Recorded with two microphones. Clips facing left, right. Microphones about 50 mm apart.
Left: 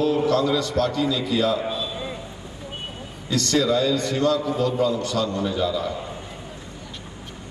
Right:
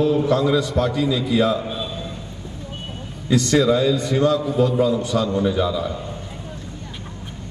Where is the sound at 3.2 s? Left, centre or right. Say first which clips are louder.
Right 4 dB; centre.